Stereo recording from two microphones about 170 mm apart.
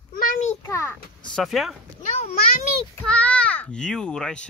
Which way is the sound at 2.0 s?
40° left (ahead or behind).